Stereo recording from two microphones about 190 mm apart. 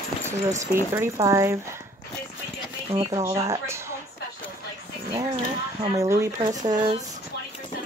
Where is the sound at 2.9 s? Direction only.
20° right (ahead or behind).